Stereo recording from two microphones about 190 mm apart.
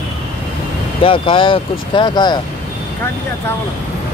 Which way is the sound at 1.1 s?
25° left (ahead or behind).